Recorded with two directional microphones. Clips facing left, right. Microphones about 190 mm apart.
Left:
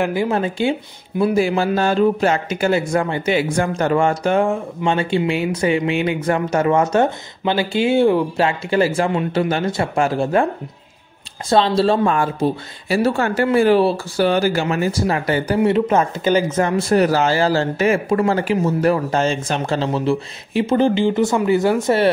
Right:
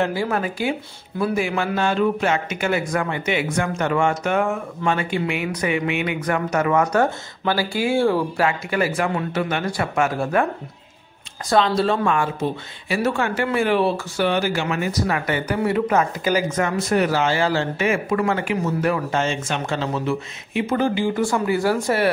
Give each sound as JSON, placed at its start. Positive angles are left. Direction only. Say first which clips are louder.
{"t": 0.0, "sound": "a man's voice", "louder": "left 3 dB", "side_deg": 20}